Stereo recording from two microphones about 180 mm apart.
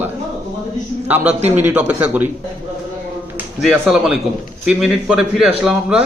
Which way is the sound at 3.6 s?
Centre (ahead or behind).